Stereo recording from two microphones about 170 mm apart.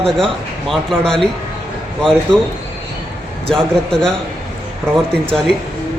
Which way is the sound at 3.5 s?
5° left (ahead or behind).